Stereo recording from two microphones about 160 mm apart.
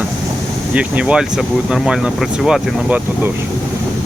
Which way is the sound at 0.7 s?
5° right (ahead or behind).